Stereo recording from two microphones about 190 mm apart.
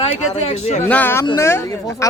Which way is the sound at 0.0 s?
35° left (ahead or behind).